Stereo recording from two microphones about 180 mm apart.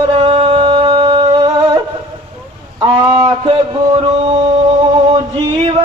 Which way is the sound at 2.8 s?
25° right (ahead or behind).